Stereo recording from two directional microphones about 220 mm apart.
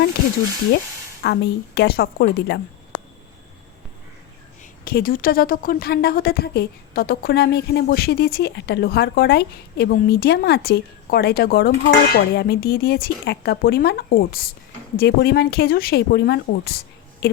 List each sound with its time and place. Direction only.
1.2 s a woman's voice: 50° left (ahead or behind)
4.9 s a woman's voice: 40° left (ahead or behind)